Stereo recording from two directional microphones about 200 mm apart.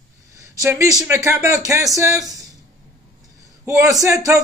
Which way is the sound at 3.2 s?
15° right (ahead or behind).